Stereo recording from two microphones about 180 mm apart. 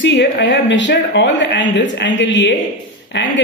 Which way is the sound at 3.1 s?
70° left (ahead or behind).